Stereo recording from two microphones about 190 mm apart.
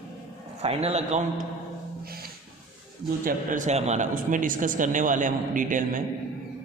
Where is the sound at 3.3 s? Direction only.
40° right (ahead or behind).